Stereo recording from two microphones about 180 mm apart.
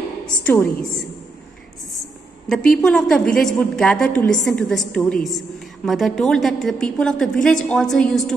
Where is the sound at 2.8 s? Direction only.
5° left (ahead or behind).